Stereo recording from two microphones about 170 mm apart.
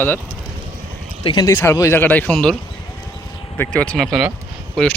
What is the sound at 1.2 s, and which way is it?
Speech, 30° left (ahead or behind).